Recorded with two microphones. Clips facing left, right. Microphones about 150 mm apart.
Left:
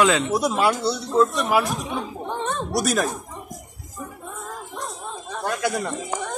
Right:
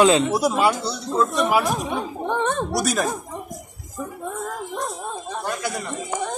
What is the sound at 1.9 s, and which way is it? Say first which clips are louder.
Gargling: right 3 dB; 60° right (ahead or behind).